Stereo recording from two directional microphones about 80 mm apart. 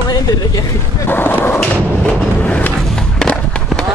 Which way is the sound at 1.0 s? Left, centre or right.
Left.